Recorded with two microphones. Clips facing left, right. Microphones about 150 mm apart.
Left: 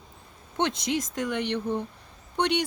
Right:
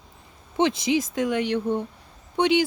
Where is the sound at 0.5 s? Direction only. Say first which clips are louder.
Right 5 dB; centre (ahead or behind).